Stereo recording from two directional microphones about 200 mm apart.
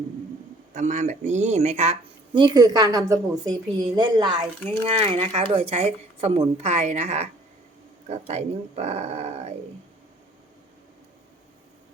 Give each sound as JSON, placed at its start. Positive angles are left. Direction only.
{"t": 0.7, "sound": "a woman's voice", "side_deg": -40}